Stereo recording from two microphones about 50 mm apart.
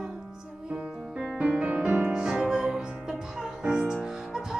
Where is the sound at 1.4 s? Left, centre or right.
Right.